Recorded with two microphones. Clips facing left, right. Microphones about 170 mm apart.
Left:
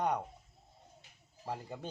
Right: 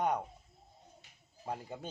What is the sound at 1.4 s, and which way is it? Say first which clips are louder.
Speech: even; centre (ahead or behind).